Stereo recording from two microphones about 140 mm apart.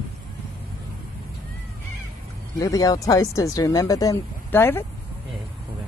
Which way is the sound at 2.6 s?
25° left (ahead or behind).